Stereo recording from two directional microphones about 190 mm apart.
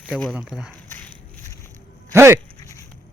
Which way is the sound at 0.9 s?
10° left (ahead or behind).